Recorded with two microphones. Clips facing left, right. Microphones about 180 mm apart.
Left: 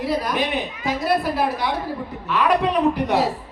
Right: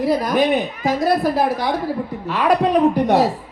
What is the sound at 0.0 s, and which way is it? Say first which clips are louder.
Speech: right 6 dB; 45° right (ahead or behind).